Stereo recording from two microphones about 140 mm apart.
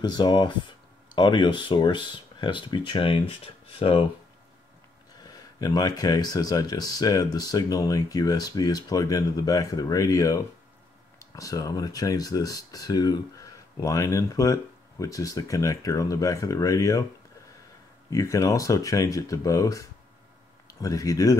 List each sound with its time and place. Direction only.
0.0 s speech: 30° left (ahead or behind)
5.2 s speech: 25° left (ahead or behind)
18.1 s speech: 25° left (ahead or behind)